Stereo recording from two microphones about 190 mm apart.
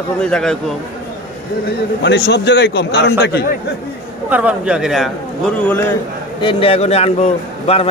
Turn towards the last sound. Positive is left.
turn(degrees=30)  # may be behind; listen again after turning